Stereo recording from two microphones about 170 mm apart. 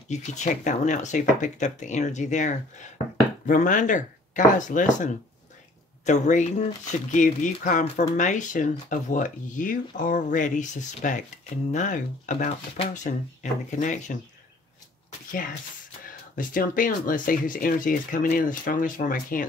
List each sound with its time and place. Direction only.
0.1 s speech: 40° left (ahead or behind)
16.3 s speech: 55° left (ahead or behind)